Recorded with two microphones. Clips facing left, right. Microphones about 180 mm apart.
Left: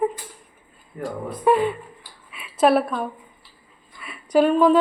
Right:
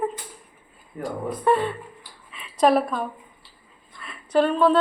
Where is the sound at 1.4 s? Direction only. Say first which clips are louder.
Left 3 dB; 10° left (ahead or behind).